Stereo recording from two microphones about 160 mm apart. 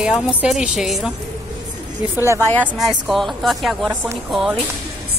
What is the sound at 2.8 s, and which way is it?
A woman's voice, centre (ahead or behind).